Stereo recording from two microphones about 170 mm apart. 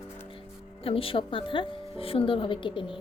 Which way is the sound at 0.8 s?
35° left (ahead or behind).